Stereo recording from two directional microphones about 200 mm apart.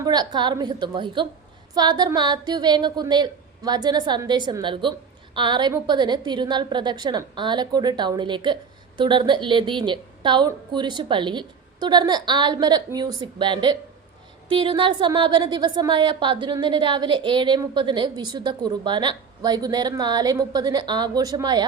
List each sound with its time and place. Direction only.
0.0 s a woman's voice: 20° right (ahead or behind)